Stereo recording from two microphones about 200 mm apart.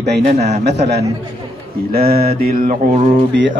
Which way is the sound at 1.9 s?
50° right (ahead or behind).